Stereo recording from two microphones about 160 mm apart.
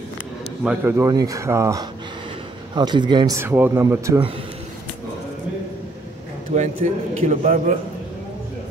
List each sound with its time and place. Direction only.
0.7 s speech: 15° right (ahead or behind)
3.3 s speech: 15° right (ahead or behind)
6.5 s a man's voice: 45° right (ahead or behind)